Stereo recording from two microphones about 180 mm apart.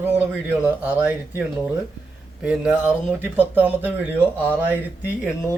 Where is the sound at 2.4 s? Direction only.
5° right (ahead or behind).